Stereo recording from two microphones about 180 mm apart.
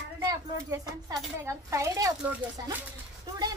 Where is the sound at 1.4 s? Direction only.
15° right (ahead or behind).